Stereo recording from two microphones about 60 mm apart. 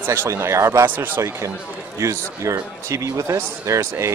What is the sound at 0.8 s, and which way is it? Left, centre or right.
Speech, right.